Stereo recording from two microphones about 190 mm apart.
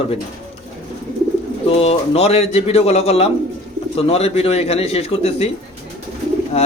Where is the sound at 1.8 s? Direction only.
35° left (ahead or behind).